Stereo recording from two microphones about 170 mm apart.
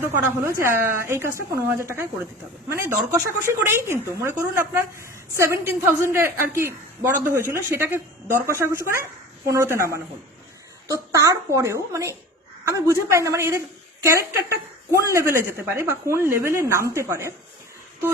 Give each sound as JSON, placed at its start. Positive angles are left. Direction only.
{"t": 0.0, "sound": "a woman's voice", "side_deg": -15}
{"t": 2.7, "sound": "a woman's voice", "side_deg": -15}